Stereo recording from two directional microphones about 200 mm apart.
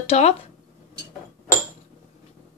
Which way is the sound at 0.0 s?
30° left (ahead or behind).